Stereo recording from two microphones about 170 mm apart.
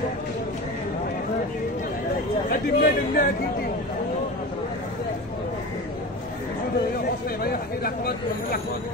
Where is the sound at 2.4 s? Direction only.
55° left (ahead or behind).